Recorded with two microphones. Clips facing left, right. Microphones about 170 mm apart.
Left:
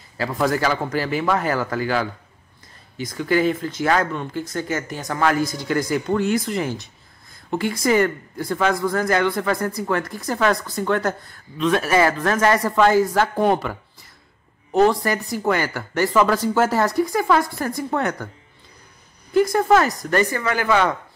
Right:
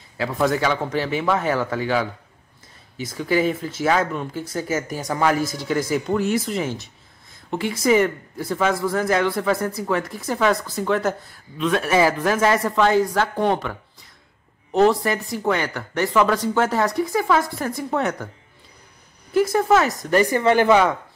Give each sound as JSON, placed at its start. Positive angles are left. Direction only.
{"t": 0.2, "sound": "speech", "side_deg": 0}
{"t": 19.3, "sound": "speech", "side_deg": -5}